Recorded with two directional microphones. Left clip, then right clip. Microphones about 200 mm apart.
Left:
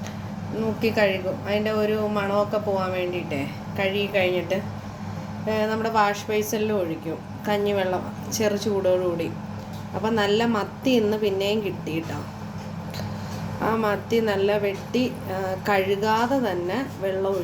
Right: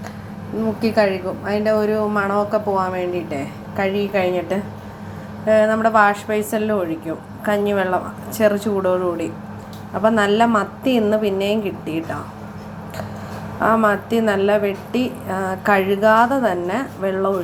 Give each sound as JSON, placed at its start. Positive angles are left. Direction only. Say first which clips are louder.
{"t": 0.8, "sound": "a woman's voice", "louder": "right 4 dB", "side_deg": -20}
{"t": 4.1, "sound": "a woman's voice", "louder": "right 3 dB", "side_deg": -15}
{"t": 5.5, "sound": "a woman's voice", "louder": "right 10 dB", "side_deg": -15}
{"t": 13.6, "sound": "a woman's voice", "louder": "right 8 dB", "side_deg": -10}